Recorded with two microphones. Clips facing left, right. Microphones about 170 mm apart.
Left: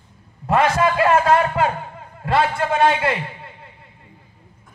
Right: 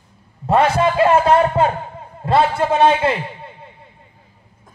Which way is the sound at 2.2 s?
30° right (ahead or behind).